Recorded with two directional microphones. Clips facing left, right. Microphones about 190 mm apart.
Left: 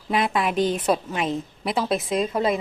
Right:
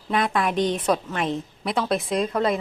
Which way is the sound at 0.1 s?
5° left (ahead or behind).